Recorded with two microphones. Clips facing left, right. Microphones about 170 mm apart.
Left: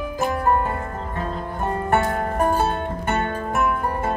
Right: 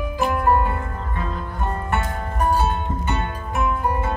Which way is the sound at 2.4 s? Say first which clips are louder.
Right 4 dB; 50° left (ahead or behind).